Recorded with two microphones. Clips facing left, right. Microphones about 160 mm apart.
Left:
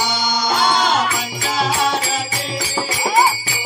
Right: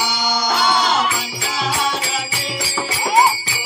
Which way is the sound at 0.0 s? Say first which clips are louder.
Even; 50° left (ahead or behind).